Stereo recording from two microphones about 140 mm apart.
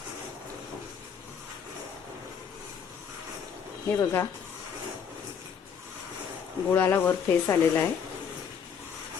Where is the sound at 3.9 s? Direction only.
20° left (ahead or behind).